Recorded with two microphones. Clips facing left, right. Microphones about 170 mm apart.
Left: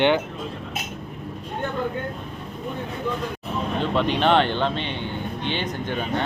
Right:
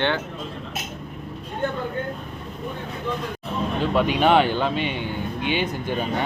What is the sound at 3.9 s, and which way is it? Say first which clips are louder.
Speech: right 2 dB; 10° right (ahead or behind).